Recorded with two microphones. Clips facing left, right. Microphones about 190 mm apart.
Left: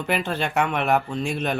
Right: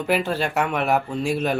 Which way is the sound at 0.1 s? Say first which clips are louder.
Right 2 dB; 5° right (ahead or behind).